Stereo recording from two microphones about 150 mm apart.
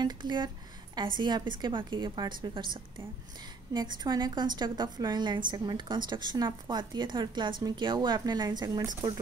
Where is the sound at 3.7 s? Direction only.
30° right (ahead or behind).